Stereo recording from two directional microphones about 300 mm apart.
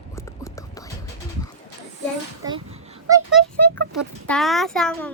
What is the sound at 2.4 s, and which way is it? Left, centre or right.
Speech, centre.